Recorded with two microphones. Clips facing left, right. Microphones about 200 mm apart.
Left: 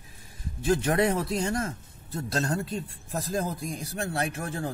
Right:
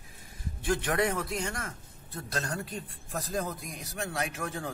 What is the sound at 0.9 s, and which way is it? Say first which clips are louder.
A man's voice: left 4 dB; 25° left (ahead or behind).